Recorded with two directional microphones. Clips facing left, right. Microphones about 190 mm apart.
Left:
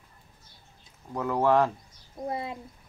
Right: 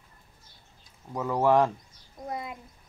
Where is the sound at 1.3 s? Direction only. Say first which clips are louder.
Right 1 dB; 15° right (ahead or behind).